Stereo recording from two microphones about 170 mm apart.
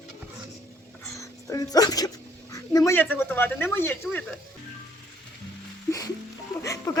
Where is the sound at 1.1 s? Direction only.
20° left (ahead or behind).